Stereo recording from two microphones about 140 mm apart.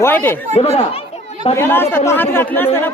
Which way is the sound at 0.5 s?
45° left (ahead or behind).